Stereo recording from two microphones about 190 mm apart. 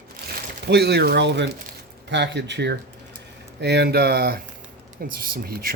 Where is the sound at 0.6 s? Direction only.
60° right (ahead or behind).